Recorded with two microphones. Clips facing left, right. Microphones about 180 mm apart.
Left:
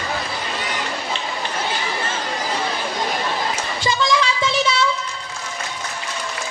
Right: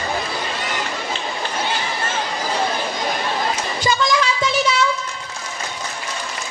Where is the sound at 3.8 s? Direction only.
25° left (ahead or behind).